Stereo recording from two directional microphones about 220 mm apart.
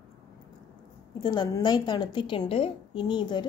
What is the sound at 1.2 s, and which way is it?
A woman's voice, 20° left (ahead or behind).